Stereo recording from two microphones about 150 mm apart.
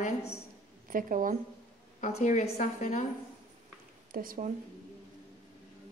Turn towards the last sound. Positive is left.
turn(degrees=-70)  # may be behind; listen again after turning